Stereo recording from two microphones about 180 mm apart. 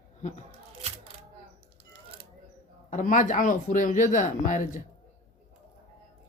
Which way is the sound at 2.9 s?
45° left (ahead or behind).